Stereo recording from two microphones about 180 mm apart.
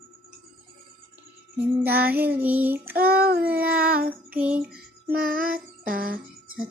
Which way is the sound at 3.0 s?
60° right (ahead or behind).